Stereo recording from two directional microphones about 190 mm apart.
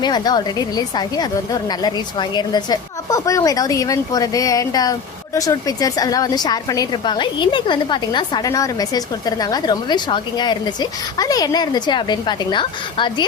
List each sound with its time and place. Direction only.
0.0 s a woman's voice: 20° left (ahead or behind)